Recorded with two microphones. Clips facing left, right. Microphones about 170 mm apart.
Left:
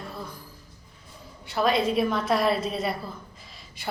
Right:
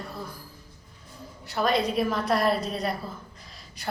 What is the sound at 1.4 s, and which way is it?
A woman's voice, centre (ahead or behind).